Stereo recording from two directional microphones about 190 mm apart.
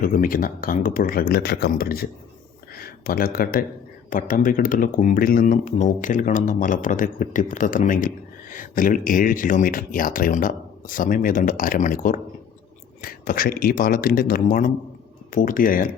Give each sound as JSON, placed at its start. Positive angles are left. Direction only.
{"t": 0.0, "sound": "speech", "side_deg": 45}